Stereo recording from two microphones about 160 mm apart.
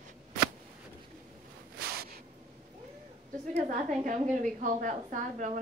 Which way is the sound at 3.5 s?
45° right (ahead or behind).